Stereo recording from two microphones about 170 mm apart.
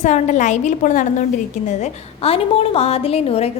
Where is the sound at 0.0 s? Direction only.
45° left (ahead or behind).